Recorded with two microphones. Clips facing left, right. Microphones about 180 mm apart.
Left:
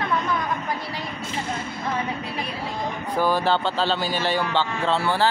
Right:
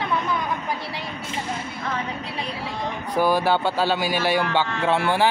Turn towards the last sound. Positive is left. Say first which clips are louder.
# right 2 dB
turn(degrees=-15)  # may be behind; listen again after turning